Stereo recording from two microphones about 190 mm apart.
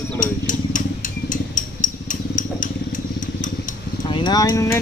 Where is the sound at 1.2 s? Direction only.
45° left (ahead or behind).